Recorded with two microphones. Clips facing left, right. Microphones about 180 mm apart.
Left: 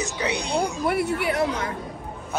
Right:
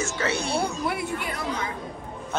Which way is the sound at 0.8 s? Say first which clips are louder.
Left 5 dB; 65° left (ahead or behind).